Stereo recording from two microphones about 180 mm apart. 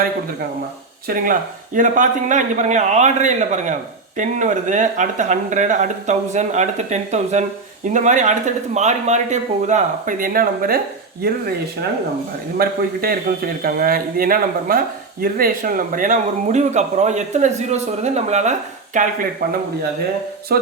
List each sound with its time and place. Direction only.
1.0 s a man's voice: 50° right (ahead or behind)
12.5 s a man's voice: 55° right (ahead or behind)
20.5 s a sound: 60° right (ahead or behind)